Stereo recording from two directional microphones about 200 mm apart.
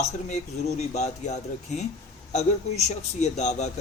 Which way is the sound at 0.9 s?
35° left (ahead or behind).